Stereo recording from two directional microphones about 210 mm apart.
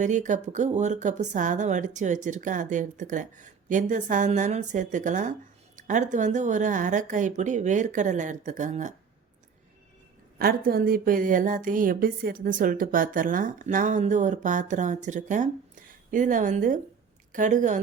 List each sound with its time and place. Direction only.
0.0 s a woman's voice: 35° right (ahead or behind)
10.3 s a woman's voice: 45° right (ahead or behind)